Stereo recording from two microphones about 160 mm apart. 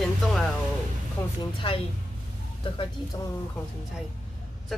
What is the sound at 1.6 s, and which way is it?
Speech, 35° left (ahead or behind).